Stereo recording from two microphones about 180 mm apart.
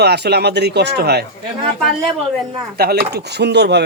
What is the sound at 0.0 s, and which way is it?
Speech, 65° right (ahead or behind).